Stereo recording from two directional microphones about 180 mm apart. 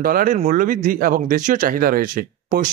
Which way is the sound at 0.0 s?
50° right (ahead or behind).